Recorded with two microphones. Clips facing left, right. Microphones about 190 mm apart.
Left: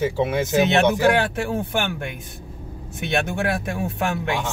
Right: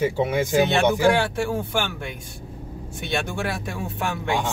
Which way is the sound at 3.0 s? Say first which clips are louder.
Left 4 dB; 20° left (ahead or behind).